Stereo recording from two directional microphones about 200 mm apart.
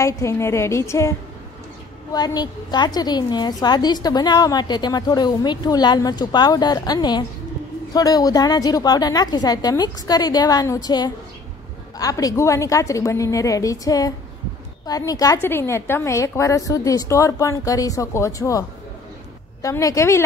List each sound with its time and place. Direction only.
0.0 s a woman's voice: 15° left (ahead or behind)
2.1 s a woman's voice: 20° left (ahead or behind)